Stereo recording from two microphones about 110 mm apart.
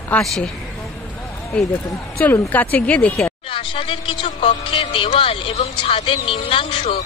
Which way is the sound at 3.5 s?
50° left (ahead or behind).